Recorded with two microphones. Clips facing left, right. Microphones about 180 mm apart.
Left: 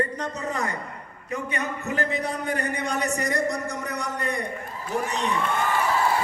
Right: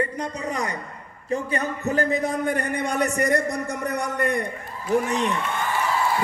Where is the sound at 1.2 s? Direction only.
30° right (ahead or behind); by 4.4 s 55° right (ahead or behind).